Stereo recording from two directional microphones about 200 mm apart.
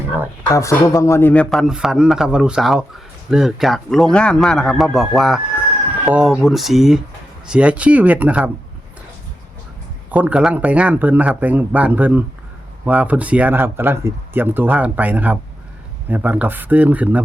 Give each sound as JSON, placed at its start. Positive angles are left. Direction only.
{"t": 0.5, "sound": "a man's voice", "side_deg": 15}
{"t": 10.1, "sound": "speech", "side_deg": -5}